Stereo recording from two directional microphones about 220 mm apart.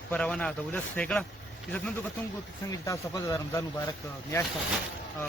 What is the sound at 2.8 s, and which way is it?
Speech, 15° left (ahead or behind).